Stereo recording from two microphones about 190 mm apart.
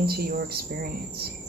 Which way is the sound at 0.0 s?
55° right (ahead or behind).